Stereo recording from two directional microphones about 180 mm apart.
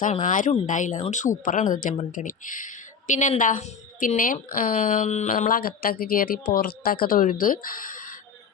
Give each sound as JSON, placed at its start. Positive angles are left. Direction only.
{"t": 0.0, "sound": "a woman's voice", "side_deg": 45}